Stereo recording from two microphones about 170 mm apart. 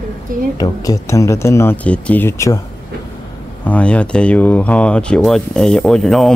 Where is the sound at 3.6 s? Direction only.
10° left (ahead or behind).